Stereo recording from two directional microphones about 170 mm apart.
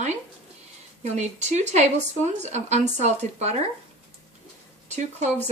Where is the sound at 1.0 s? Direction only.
45° right (ahead or behind).